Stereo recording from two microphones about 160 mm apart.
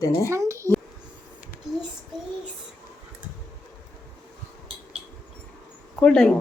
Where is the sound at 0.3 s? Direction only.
15° right (ahead or behind).